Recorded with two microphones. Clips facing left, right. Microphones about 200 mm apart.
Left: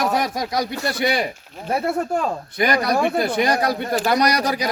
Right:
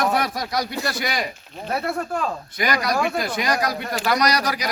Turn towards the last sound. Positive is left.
turn(degrees=25)  # may be behind; listen again after turning